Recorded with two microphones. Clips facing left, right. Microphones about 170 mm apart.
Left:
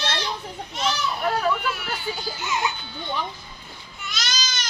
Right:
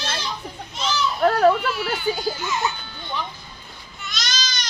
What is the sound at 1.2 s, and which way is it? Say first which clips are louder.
Speech: right 8 dB; 50° right (ahead or behind).